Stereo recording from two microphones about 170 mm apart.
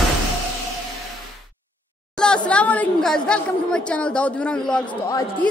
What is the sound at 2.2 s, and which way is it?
A woman's voice, 5° left (ahead or behind).